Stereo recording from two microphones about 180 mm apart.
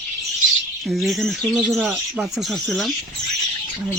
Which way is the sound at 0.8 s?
Centre (ahead or behind).